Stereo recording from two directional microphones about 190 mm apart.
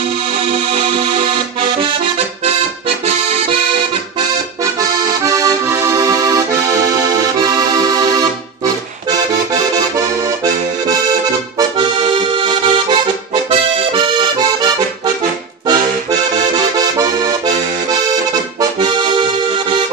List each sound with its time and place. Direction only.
0.5 s accordion: 25° right (ahead or behind)
4.7 s accordion: 20° right (ahead or behind)
9.5 s accordion: 20° right (ahead or behind)
15.6 s music: 20° right (ahead or behind)
16.7 s accordion: 20° right (ahead or behind)
18.6 s accordion: 25° right (ahead or behind)